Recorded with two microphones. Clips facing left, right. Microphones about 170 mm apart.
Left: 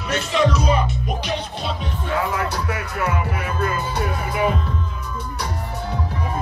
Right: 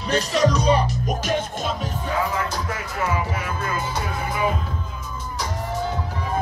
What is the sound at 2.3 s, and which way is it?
Music, 65° left (ahead or behind).